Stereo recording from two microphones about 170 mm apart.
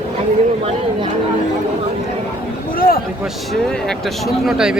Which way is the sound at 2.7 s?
60° left (ahead or behind).